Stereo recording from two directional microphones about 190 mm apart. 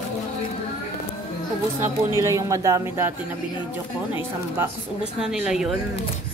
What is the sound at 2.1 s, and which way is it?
Speech, 15° right (ahead or behind).